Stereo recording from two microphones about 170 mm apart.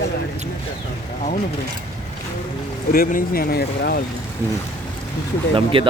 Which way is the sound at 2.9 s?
55° left (ahead or behind).